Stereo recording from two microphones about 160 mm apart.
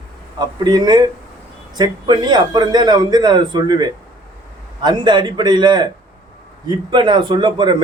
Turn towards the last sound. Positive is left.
turn(degrees=-30)  # may be behind; listen again after turning